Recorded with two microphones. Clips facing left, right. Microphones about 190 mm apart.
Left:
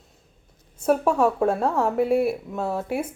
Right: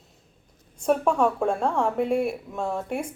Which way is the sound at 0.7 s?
5° left (ahead or behind).